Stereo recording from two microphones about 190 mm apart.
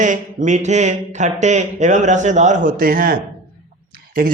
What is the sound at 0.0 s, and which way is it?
Speech, 40° right (ahead or behind).